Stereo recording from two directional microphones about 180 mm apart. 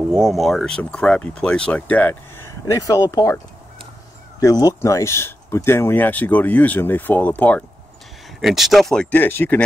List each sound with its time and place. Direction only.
0.1 s speech: centre (ahead or behind); by 3.3 s 20° left (ahead or behind)
4.4 s speech: 20° left (ahead or behind)